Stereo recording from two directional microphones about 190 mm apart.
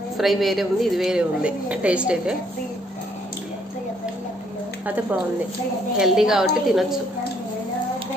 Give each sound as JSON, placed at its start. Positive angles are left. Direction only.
{"t": 0.2, "sound": "a woman's voice", "side_deg": 0}
{"t": 5.9, "sound": "a woman's voice", "side_deg": -5}